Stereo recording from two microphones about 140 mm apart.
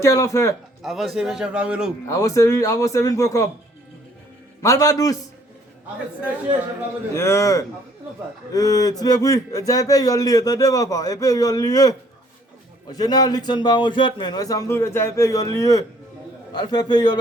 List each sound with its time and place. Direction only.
0.0 s a man's voice: 20° left (ahead or behind)
0.8 s a man's voice: centre (ahead or behind)
2.0 s a man's voice: 25° left (ahead or behind)
4.6 s a man's voice: 25° left (ahead or behind)
7.1 s a man's voice: 20° left (ahead or behind)